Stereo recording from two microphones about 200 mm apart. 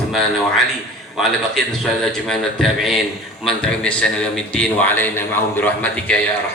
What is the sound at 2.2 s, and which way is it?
A man's voice, centre (ahead or behind).